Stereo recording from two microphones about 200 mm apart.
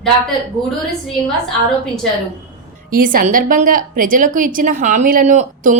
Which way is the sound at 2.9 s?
45° right (ahead or behind).